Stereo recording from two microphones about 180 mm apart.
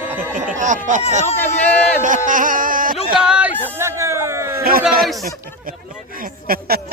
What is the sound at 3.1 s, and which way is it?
Speech, 5° right (ahead or behind).